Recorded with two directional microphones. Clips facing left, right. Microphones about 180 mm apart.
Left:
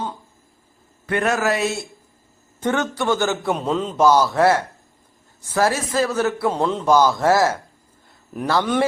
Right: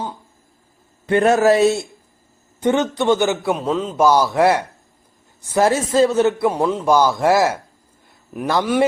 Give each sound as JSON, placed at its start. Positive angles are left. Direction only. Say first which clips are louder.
{"t": 1.0, "sound": "a man's voice", "louder": "right 7 dB", "side_deg": -30}
{"t": 2.6, "sound": "a man's voice", "louder": "right 4 dB", "side_deg": -15}
{"t": 3.4, "sound": "a man's voice", "louder": "right 2 dB", "side_deg": 0}
{"t": 4.0, "sound": "a man's voice", "louder": "right 1 dB", "side_deg": -10}
{"t": 6.6, "sound": "a man's voice", "louder": "right 2 dB", "side_deg": 0}
{"t": 6.8, "sound": "a man's voice", "louder": "even", "side_deg": -10}